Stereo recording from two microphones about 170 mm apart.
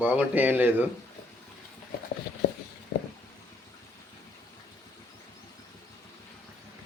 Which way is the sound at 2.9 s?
75° left (ahead or behind).